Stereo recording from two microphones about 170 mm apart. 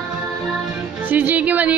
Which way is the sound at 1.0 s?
10° right (ahead or behind).